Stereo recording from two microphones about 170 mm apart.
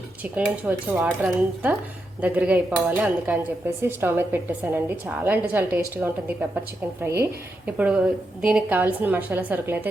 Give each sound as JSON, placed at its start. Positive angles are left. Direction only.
{"t": 0.2, "sound": "a woman's voice", "side_deg": -10}